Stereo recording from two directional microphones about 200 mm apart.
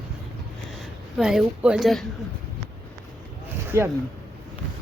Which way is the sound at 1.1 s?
Centre (ahead or behind).